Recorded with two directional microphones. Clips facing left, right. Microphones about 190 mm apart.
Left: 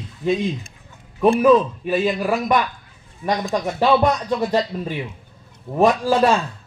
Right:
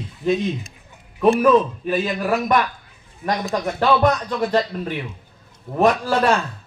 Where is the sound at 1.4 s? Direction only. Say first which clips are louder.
Left 1 dB; 5° left (ahead or behind).